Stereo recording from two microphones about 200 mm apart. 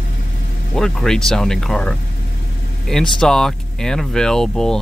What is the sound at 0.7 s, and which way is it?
Speech, 5° left (ahead or behind).